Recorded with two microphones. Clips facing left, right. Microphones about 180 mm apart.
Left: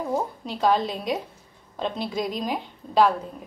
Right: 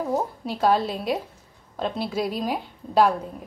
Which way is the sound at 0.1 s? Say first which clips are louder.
Right 1 dB; 10° right (ahead or behind).